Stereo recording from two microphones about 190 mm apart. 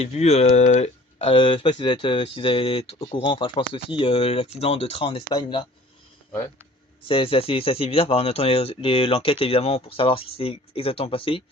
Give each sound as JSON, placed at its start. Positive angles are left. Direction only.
{"t": 0.0, "sound": "speech", "side_deg": 35}
{"t": 7.1, "sound": "speech", "side_deg": 30}